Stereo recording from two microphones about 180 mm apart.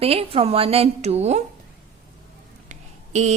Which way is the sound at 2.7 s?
40° right (ahead or behind).